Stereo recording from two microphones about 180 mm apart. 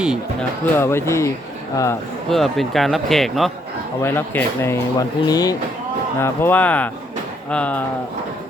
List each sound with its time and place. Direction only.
0.6 s speech: 15° left (ahead or behind)
2.3 s speech: centre (ahead or behind)
4.0 s speech: 10° left (ahead or behind)